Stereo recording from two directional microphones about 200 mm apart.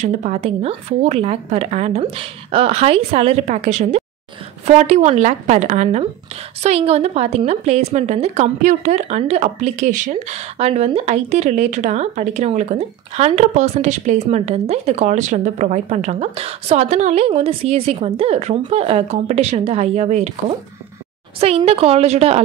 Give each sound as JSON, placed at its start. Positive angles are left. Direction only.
{"t": 0.0, "sound": "a woman's voice", "side_deg": -35}